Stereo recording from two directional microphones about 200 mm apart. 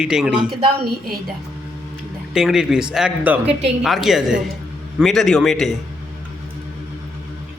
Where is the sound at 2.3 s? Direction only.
Centre (ahead or behind).